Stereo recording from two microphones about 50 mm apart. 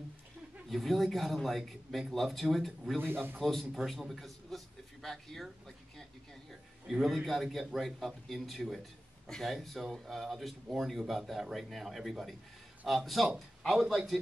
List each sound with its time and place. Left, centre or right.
0.7 s speech: centre
3.0 s a man's voice: right
3.3 s speech: centre
6.9 s speech: centre